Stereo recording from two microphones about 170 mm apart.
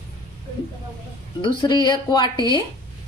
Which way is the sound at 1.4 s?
25° left (ahead or behind).